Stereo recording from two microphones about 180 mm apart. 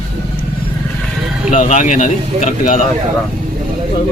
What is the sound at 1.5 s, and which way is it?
Speech, 45° left (ahead or behind).